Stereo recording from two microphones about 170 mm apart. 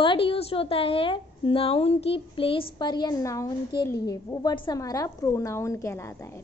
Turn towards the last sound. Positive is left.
turn(degrees=15)  # may be behind; listen again after turning